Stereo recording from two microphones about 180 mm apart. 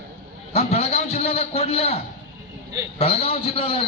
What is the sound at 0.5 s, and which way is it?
A man's voice, 35° left (ahead or behind).